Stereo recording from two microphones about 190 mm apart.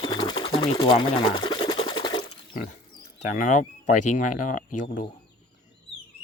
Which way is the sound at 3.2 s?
40° left (ahead or behind).